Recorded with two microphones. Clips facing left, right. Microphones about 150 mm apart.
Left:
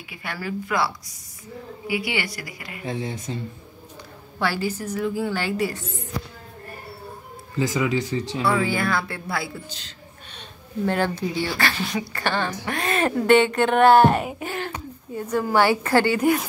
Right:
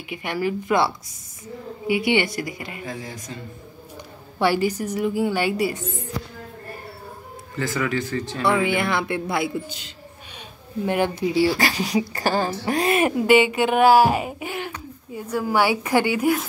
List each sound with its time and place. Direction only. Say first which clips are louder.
0.1 s a man's voice: right 6 dB; 20° right (ahead or behind)
2.8 s speech: left 4 dB; 25° left (ahead or behind)
4.4 s a woman's voice: right 5 dB; 15° right (ahead or behind)
7.5 s speech: left 2 dB; 15° left (ahead or behind)
8.5 s a man's voice: right 2 dB; 20° right (ahead or behind)
12.1 s a woman's voice: right 3 dB; 35° right (ahead or behind)
12.9 s a woman's voice: even; 10° right (ahead or behind)